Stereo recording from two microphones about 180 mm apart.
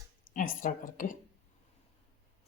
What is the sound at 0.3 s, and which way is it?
Speech, 45° left (ahead or behind).